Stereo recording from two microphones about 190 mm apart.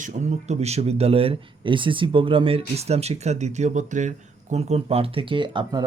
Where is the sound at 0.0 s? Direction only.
35° right (ahead or behind).